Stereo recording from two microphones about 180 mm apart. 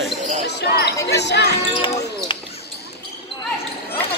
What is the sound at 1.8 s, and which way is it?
Basketball bounce, 30° left (ahead or behind).